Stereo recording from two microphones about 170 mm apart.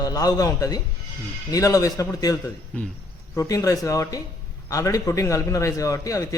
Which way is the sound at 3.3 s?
20° left (ahead or behind).